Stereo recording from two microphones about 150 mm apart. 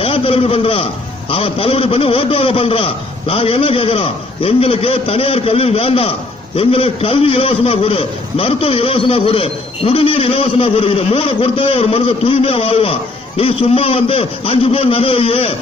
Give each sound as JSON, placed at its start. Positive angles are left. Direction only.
{"t": 0.0, "sound": "a man's voice", "side_deg": 40}